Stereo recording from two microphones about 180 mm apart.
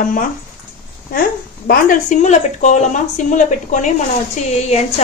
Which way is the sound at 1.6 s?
50° left (ahead or behind).